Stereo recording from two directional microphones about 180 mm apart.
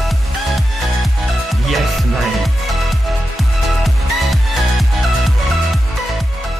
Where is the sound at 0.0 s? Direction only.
Centre (ahead or behind).